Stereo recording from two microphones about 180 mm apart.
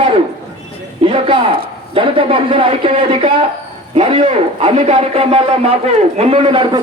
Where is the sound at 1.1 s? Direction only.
30° right (ahead or behind).